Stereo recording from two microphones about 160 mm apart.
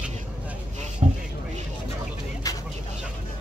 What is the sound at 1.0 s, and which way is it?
Vehicle, 40° right (ahead or behind).